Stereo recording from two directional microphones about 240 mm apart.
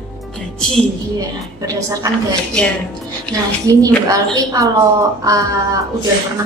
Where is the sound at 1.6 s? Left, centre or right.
Centre.